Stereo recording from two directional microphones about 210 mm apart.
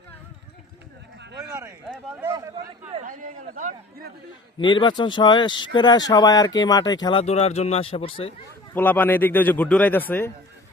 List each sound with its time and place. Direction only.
2.2 s a man's voice: 15° right (ahead or behind)
3.1 s a man's voice: 35° right (ahead or behind)
4.5 s speech: 20° left (ahead or behind)
8.7 s speech: 10° left (ahead or behind)